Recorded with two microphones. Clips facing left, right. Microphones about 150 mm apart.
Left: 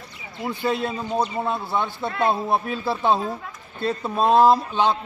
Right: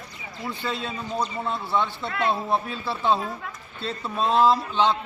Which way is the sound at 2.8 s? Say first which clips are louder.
Left 5 dB; 45° left (ahead or behind).